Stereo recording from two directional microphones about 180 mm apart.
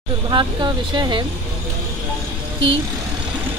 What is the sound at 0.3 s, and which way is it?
Speech, 25° right (ahead or behind).